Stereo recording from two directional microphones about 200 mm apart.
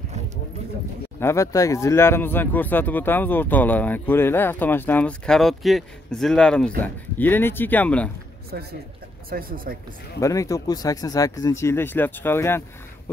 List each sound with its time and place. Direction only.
1.2 s speech: 15° left (ahead or behind)
9.3 s speech: 45° right (ahead or behind)
10.2 s speech: 15° left (ahead or behind)